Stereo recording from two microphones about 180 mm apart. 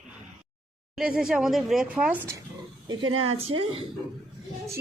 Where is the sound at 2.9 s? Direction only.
25° right (ahead or behind).